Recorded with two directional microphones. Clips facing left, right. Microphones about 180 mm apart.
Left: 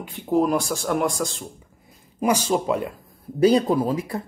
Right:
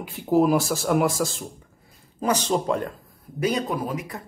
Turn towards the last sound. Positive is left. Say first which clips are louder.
# left 6 dB
turn(degrees=30)  # may be behind; listen again after turning